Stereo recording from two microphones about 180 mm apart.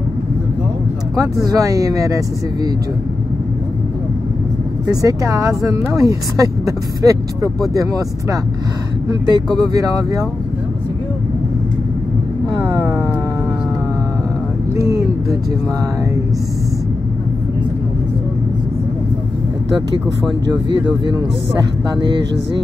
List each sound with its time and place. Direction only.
1.1 s speech: 20° right (ahead or behind)
4.8 s speech: 20° right (ahead or behind)
14.8 s vehicle: 20° right (ahead or behind)
21.8 s speech: 25° right (ahead or behind)